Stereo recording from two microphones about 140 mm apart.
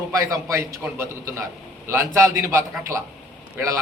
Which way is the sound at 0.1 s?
25° right (ahead or behind).